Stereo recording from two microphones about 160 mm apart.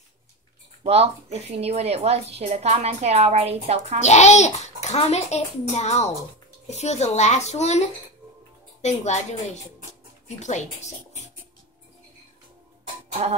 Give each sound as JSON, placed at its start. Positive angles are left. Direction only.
{"t": 0.8, "sound": "a woman's voice", "side_deg": -40}
{"t": 4.0, "sound": "a child's voice", "side_deg": 45}
{"t": 10.2, "sound": "a child's voice", "side_deg": 45}